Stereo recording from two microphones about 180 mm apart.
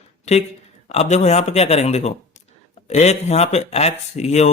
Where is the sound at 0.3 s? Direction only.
40° left (ahead or behind).